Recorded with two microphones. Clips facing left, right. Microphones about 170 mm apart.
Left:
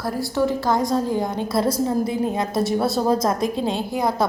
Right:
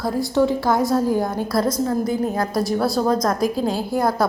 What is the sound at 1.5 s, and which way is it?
A woman's voice, 30° left (ahead or behind).